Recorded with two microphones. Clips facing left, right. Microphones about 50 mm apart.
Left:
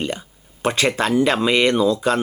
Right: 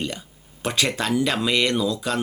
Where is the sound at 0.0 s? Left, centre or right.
Centre.